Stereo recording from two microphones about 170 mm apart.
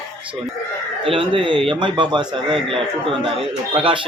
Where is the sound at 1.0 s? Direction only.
30° right (ahead or behind).